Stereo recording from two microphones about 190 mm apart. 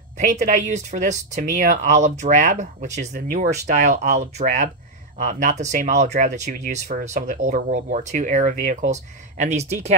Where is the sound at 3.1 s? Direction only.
50° right (ahead or behind).